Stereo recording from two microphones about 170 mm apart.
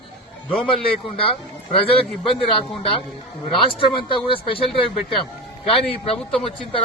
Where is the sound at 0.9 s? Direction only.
30° left (ahead or behind).